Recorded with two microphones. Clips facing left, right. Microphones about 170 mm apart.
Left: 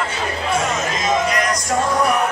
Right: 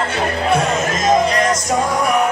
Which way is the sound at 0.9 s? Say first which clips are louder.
Right 5 dB; 40° right (ahead or behind).